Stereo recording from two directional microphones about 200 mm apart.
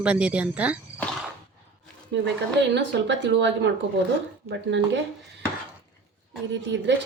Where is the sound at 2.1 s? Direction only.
60° right (ahead or behind).